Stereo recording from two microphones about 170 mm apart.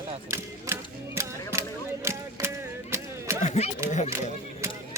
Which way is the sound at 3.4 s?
40° left (ahead or behind).